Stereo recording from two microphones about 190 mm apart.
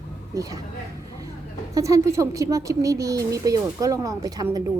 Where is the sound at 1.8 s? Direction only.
15° right (ahead or behind).